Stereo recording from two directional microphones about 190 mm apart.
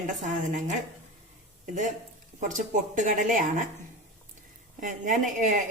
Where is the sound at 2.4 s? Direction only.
40° right (ahead or behind).